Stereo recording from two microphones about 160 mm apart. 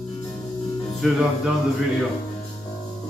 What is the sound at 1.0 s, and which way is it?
Speech, centre (ahead or behind).